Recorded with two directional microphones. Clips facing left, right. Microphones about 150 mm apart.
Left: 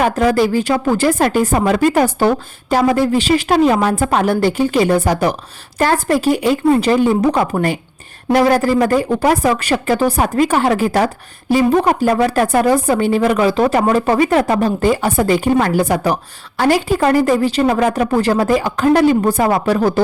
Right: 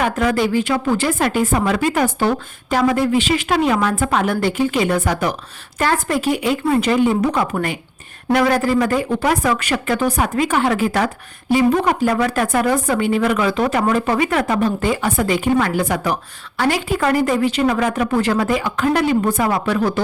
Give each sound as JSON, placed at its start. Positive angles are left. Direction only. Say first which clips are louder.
{"t": 0.0, "sound": "speech", "louder": "left 4 dB", "side_deg": 35}